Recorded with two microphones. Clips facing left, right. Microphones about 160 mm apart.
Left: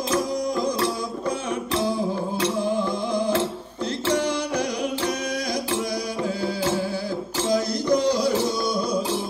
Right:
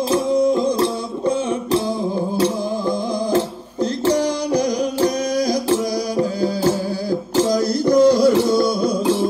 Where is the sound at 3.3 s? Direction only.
35° right (ahead or behind).